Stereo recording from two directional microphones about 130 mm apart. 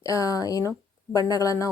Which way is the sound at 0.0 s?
25° left (ahead or behind).